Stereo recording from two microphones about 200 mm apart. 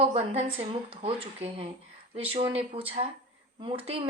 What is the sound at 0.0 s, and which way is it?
A woman's voice, 30° right (ahead or behind).